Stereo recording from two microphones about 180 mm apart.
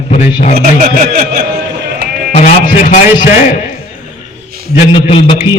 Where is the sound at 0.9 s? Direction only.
60° right (ahead or behind).